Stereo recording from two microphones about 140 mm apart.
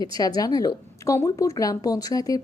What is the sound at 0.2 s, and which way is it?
Speech, 25° left (ahead or behind).